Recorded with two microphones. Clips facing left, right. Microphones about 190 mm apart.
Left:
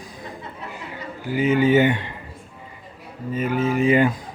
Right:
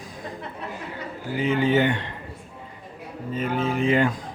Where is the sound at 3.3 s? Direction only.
5° left (ahead or behind).